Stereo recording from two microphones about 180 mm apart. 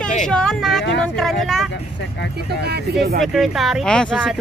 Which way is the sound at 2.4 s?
65° right (ahead or behind).